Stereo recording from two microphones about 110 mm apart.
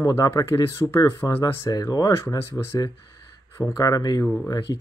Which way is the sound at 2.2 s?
25° left (ahead or behind).